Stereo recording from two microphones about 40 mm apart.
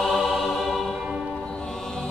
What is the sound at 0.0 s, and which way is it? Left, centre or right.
Music, centre.